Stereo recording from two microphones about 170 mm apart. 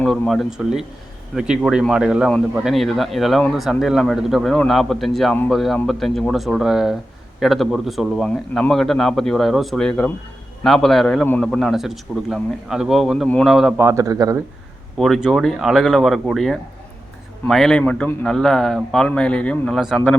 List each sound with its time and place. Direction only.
0.0 s speech: centre (ahead or behind)
13.8 s speech: 20° right (ahead or behind)
14.9 s speech: centre (ahead or behind)